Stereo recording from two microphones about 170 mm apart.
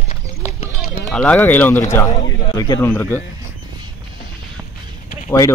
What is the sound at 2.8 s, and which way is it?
Speech, 10° left (ahead or behind).